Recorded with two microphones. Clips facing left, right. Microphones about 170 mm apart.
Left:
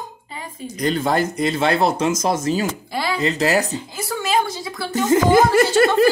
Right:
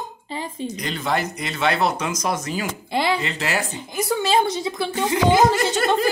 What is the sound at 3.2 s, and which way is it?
Speech, 40° left (ahead or behind).